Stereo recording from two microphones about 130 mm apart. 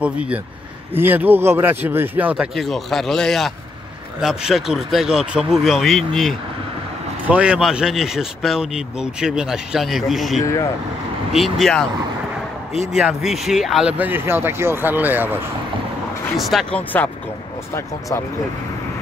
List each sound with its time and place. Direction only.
0.0 s speech: 10° right (ahead or behind)
2.5 s speech: centre (ahead or behind)
7.2 s speech: 10° right (ahead or behind)
10.4 s speech: 25° left (ahead or behind)
11.3 s speech: centre (ahead or behind)
12.9 s speech: centre (ahead or behind)
16.3 s speech: centre (ahead or behind)